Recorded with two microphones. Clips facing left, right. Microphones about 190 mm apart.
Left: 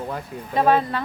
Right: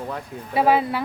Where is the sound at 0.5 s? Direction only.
10° right (ahead or behind).